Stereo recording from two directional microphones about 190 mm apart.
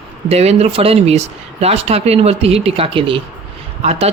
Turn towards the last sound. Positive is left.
turn(degrees=-35)  # may be behind; listen again after turning